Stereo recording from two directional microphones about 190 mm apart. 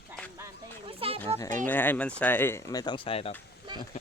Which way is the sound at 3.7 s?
25° right (ahead or behind).